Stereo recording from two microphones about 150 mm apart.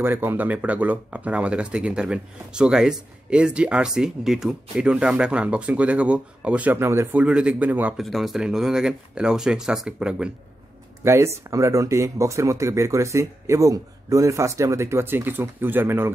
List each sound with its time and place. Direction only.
0.0 s speech: 15° right (ahead or behind)
11.1 s speech: 20° right (ahead or behind)